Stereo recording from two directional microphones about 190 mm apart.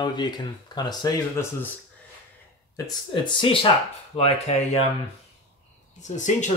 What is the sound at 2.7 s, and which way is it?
Speech, 20° left (ahead or behind).